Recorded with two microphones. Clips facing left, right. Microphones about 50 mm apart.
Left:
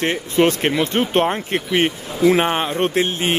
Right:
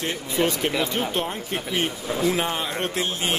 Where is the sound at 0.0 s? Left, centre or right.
Left.